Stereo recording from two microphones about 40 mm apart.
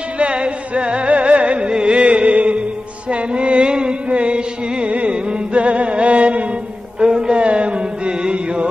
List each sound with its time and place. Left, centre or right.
0.2 s music: right